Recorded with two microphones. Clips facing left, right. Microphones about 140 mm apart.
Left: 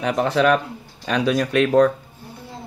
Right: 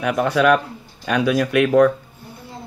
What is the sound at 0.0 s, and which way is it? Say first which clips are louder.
Speech: right 1 dB; 30° left (ahead or behind).